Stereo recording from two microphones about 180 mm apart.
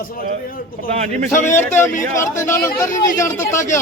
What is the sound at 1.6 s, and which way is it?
A man's voice, 15° left (ahead or behind).